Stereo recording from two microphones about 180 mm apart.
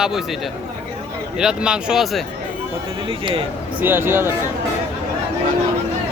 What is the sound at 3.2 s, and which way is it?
Speech, 30° right (ahead or behind).